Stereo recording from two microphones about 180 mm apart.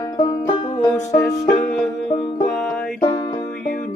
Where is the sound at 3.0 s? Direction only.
20° left (ahead or behind).